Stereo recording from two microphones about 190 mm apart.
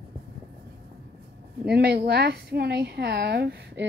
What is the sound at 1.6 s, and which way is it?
A woman's voice, 60° right (ahead or behind).